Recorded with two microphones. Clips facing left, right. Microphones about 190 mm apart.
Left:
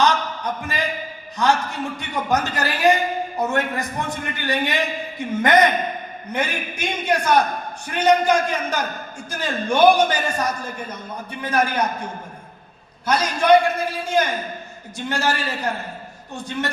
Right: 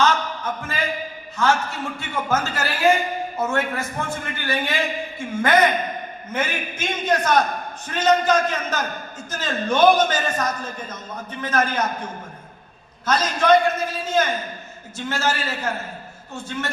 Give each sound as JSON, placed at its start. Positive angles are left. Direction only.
{"t": 0.0, "sound": "a sound", "side_deg": 15}
{"t": 1.4, "sound": "a man's voice", "side_deg": 15}
{"t": 13.1, "sound": "a man's voice", "side_deg": 10}